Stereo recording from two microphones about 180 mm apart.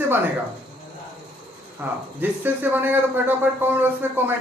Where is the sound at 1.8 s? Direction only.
10° right (ahead or behind).